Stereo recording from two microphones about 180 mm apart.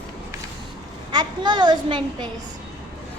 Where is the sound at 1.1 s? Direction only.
25° right (ahead or behind).